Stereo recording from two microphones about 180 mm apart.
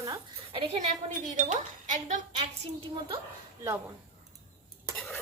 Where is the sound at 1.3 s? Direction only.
45° right (ahead or behind).